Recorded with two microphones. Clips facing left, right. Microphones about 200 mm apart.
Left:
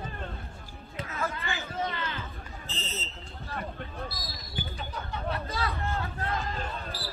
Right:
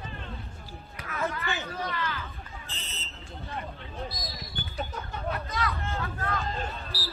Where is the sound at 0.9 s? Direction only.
25° left (ahead or behind).